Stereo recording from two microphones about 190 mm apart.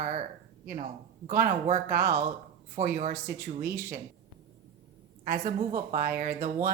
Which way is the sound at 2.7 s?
40° right (ahead or behind).